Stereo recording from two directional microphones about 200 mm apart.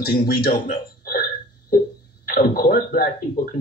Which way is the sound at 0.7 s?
45° left (ahead or behind).